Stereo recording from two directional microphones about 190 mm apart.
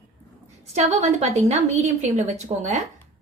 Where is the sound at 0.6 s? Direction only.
35° right (ahead or behind).